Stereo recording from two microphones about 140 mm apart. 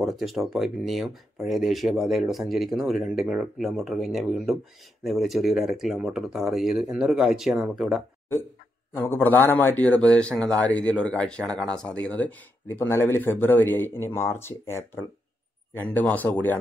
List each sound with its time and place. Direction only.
0.0 s speech: centre (ahead or behind)
8.9 s a man's voice: 15° left (ahead or behind)